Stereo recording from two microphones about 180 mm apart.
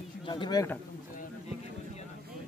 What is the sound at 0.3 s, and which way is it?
Speech, 25° left (ahead or behind).